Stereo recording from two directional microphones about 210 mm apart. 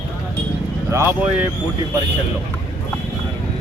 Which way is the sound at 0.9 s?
10° right (ahead or behind).